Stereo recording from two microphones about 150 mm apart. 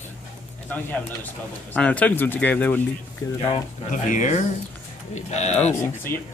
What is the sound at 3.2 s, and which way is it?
Speech, 30° left (ahead or behind).